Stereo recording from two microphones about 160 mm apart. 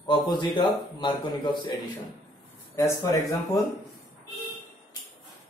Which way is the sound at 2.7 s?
20° left (ahead or behind).